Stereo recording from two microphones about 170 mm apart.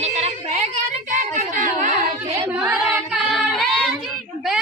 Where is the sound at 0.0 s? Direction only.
40° right (ahead or behind).